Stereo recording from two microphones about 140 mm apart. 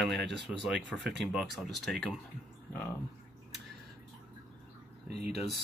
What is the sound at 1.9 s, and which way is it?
Speech, 5° left (ahead or behind).